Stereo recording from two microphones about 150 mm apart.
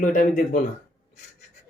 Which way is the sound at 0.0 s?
60° left (ahead or behind).